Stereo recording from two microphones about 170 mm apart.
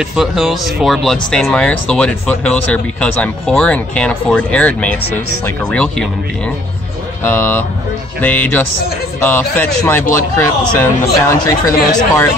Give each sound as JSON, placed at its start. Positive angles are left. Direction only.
{"t": 0.0, "sound": "speech", "side_deg": 0}
{"t": 7.2, "sound": "speech", "side_deg": 10}